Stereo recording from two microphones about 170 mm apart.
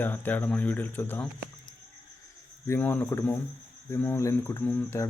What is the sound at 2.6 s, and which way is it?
A man's voice, 15° left (ahead or behind).